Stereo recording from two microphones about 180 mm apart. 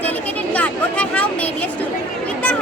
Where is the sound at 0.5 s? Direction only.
5° left (ahead or behind).